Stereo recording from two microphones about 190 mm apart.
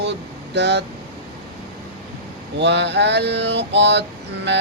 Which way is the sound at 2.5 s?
65° right (ahead or behind).